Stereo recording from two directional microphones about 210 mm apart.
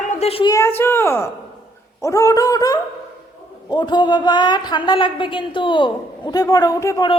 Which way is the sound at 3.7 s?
20° left (ahead or behind).